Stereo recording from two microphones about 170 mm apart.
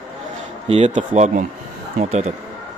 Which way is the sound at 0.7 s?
40° right (ahead or behind).